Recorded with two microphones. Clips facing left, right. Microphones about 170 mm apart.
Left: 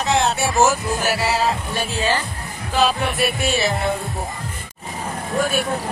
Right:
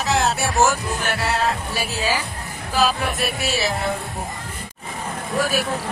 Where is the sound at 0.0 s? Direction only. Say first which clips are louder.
Left 2 dB; centre (ahead or behind).